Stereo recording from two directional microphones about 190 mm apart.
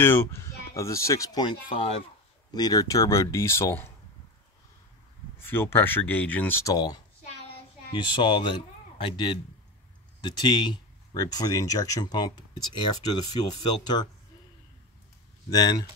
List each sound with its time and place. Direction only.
0.0 s speech: 10° left (ahead or behind)
5.4 s speech: 10° left (ahead or behind)
15.5 s speech: 20° left (ahead or behind)